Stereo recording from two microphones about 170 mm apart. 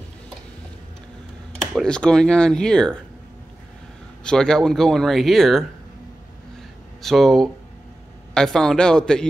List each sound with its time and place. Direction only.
1.7 s speech: 5° left (ahead or behind)
4.2 s speech: 5° left (ahead or behind)
7.0 s speech: centre (ahead or behind)